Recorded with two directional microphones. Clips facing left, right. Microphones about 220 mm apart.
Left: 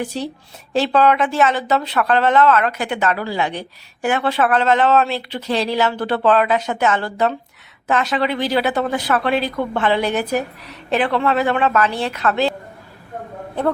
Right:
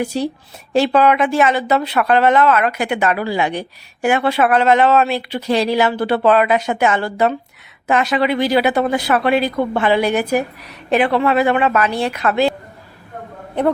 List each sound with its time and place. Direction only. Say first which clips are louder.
0.0 s speech: right 4 dB; 10° right (ahead or behind)